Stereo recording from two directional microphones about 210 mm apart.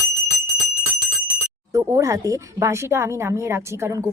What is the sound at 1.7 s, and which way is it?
Speech, 15° right (ahead or behind).